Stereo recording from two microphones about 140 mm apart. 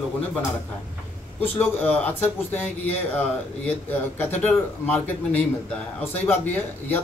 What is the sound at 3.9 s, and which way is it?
A man's voice, 15° left (ahead or behind).